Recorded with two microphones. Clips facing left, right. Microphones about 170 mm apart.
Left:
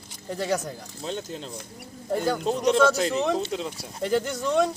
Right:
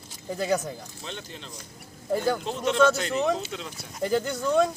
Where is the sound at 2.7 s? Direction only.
35° left (ahead or behind).